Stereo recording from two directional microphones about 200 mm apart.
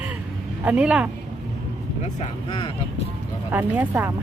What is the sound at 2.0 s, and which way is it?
Speech, 35° left (ahead or behind).